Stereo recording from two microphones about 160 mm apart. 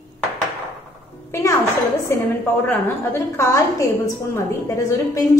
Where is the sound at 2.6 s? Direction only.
15° left (ahead or behind).